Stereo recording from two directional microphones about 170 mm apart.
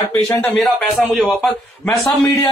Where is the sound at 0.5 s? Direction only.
Centre (ahead or behind).